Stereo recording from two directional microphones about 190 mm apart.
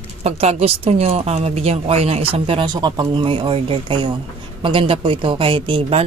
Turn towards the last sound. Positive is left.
turn(degrees=-25)  # may be behind; listen again after turning